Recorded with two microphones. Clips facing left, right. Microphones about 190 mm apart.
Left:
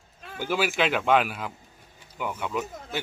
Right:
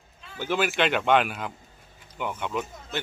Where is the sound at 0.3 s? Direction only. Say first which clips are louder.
Even; 10° left (ahead or behind).